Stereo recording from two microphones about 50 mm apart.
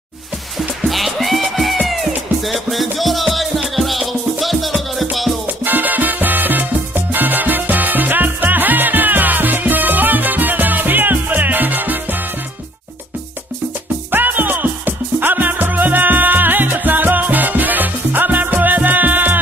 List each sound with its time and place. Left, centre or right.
0.6 s music: centre
5.7 s music: right
14.1 s music: right